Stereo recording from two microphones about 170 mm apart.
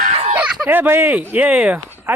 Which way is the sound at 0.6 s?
10° right (ahead or behind).